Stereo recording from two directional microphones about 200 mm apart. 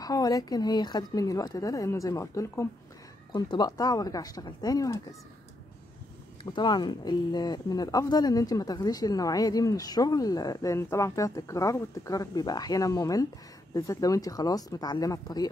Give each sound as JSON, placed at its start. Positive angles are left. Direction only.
{"t": 0.0, "sound": "speech", "side_deg": 20}
{"t": 6.5, "sound": "speech", "side_deg": 20}